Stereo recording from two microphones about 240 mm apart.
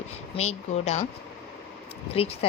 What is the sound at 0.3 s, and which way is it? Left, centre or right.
Speech, left.